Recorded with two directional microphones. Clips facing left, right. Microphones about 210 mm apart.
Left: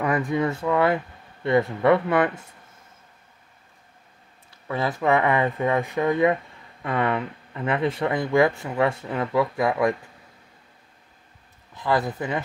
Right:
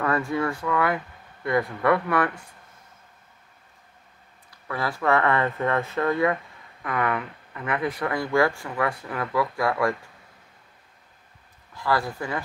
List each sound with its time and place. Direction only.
0.0 s speech: 15° left (ahead or behind)
4.6 s speech: 20° left (ahead or behind)
11.7 s speech: 20° left (ahead or behind)